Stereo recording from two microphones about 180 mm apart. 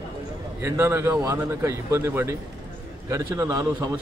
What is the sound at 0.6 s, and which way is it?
Speech, 15° right (ahead or behind).